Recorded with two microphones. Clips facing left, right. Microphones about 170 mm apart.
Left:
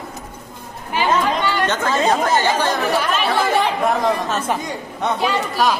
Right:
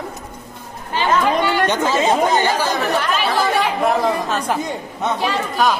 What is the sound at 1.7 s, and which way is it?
Speech, 15° right (ahead or behind).